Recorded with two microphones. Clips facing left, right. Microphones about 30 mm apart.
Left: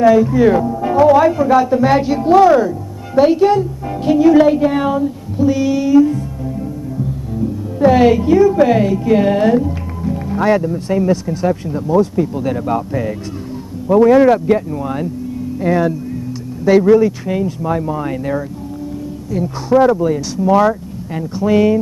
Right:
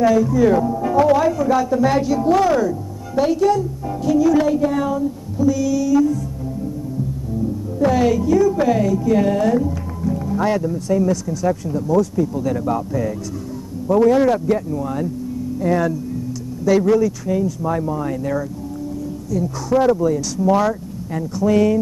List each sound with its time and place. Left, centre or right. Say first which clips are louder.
0.0 s speech: left 4 dB; left
7.8 s speech: left 6 dB; left
9.6 s music: left 2 dB; left
10.6 s speech: left 2 dB; left